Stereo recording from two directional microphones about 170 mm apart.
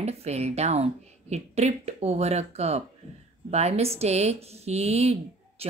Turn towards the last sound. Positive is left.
turn(degrees=-35)  # may be behind; listen again after turning